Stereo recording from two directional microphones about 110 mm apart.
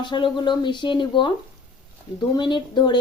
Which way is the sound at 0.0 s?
45° left (ahead or behind).